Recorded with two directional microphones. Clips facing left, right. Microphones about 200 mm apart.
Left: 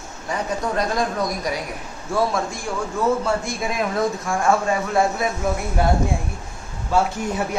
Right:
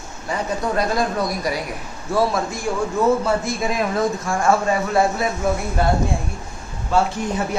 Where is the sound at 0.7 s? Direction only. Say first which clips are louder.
Right 3 dB; 5° right (ahead or behind).